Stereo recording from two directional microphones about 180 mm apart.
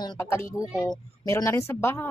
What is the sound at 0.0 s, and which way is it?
Speech, 20° left (ahead or behind).